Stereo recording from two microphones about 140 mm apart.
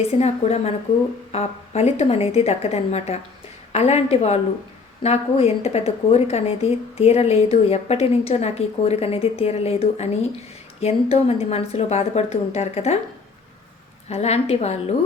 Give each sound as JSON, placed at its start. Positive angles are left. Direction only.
{"t": 0.1, "sound": "a woman's voice", "side_deg": 50}
{"t": 14.1, "sound": "a woman's voice", "side_deg": 50}